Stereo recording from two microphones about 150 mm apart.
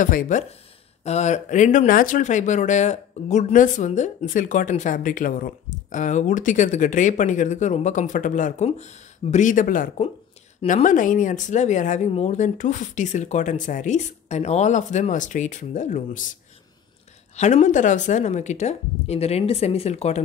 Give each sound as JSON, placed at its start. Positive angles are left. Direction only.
{"t": 0.0, "sound": "speech", "side_deg": 60}
{"t": 1.0, "sound": "speech", "side_deg": 50}
{"t": 17.4, "sound": "a woman's voice", "side_deg": 50}